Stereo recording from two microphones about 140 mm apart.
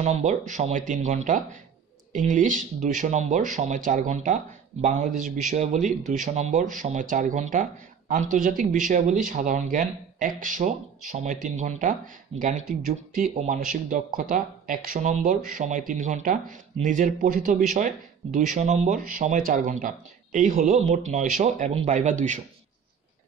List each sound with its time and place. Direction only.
0.0 s speech: 55° right (ahead or behind); by 6.3 s 70° right (ahead or behind)
6.3 s speech: 55° right (ahead or behind)
6.7 s speech: 70° right (ahead or behind); by 15.0 s 85° right
15.0 s speech: 70° right (ahead or behind)
17.7 s speech: 65° right (ahead or behind)
18.9 s speech: 80° right
20.7 s speech: 55° right (ahead or behind)